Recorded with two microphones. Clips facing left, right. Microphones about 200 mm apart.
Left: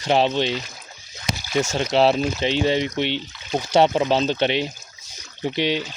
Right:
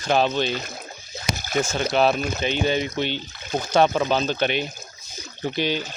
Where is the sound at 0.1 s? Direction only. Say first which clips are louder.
Left 2 dB; 25° left (ahead or behind).